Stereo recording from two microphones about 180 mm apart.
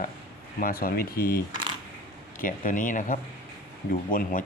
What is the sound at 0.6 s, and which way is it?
Speech, 55° left (ahead or behind).